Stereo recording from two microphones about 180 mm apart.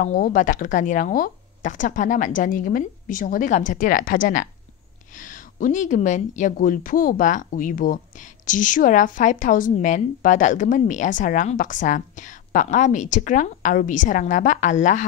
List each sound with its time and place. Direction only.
0.0 s speech: 50° left (ahead or behind)